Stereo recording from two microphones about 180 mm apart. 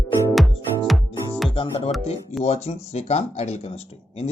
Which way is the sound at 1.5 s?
30° left (ahead or behind).